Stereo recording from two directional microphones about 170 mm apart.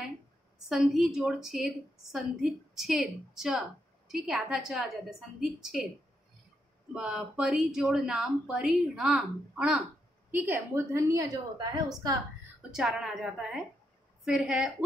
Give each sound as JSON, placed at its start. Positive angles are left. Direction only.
{"t": 0.7, "sound": "speech", "side_deg": 0}
{"t": 2.7, "sound": "speech", "side_deg": -5}
{"t": 6.9, "sound": "a woman's voice", "side_deg": -5}
{"t": 12.7, "sound": "speech", "side_deg": 0}